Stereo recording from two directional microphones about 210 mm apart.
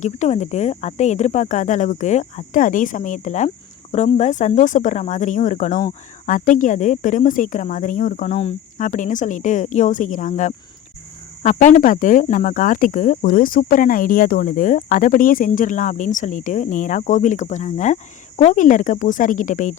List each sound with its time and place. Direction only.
0.0 s speech: 35° left (ahead or behind)